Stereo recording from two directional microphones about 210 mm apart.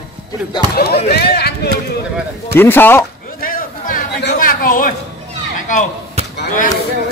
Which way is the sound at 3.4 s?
40° left (ahead or behind).